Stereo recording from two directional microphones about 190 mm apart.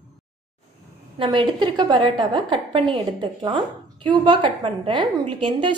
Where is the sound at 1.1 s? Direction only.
25° right (ahead or behind).